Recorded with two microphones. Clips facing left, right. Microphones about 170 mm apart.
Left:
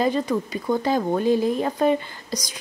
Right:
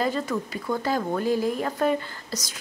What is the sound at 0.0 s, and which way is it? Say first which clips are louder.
A woman's voice: left 4 dB; 20° left (ahead or behind).